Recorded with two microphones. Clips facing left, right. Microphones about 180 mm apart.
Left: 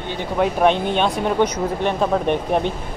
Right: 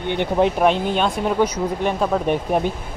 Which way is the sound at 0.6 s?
5° right (ahead or behind).